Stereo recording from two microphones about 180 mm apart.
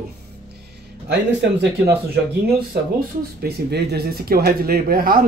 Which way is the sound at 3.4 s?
60° right (ahead or behind).